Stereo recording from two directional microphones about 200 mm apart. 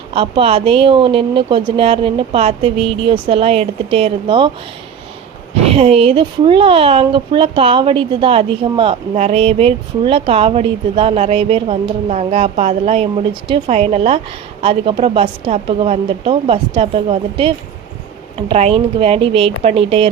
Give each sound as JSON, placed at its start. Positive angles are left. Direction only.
{"t": 0.1, "sound": "speech", "side_deg": -25}
{"t": 5.6, "sound": "a woman's voice", "side_deg": -30}